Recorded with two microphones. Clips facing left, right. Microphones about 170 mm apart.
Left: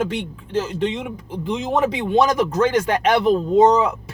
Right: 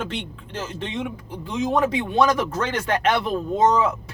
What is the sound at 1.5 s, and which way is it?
Speech, 20° left (ahead or behind).